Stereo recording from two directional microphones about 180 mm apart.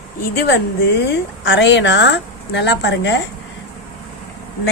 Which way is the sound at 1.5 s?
90° left.